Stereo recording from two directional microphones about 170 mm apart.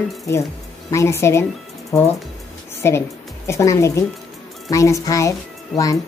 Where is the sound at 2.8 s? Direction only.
15° left (ahead or behind).